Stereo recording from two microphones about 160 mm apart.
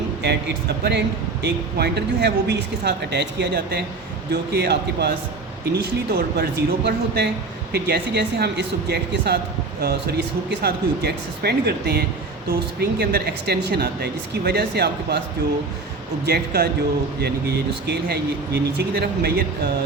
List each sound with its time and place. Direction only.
0.2 s speech: 90° right
16.2 s speech: 85° right